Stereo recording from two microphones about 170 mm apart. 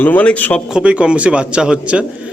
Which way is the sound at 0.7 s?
5° right (ahead or behind).